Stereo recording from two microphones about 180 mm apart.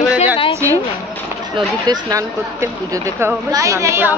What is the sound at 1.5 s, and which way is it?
A woman's voice, 25° right (ahead or behind).